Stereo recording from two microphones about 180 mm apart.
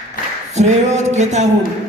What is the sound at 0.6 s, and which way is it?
Speech, 40° right (ahead or behind).